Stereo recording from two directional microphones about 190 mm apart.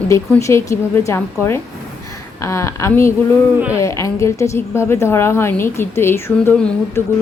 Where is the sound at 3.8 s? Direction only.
15° left (ahead or behind).